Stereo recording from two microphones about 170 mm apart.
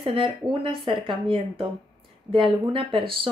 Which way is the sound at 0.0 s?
30° right (ahead or behind).